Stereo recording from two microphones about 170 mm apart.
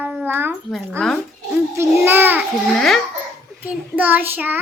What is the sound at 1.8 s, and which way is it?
Child singing, 10° right (ahead or behind).